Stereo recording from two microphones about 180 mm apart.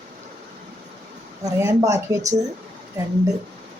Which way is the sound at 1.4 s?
15° right (ahead or behind).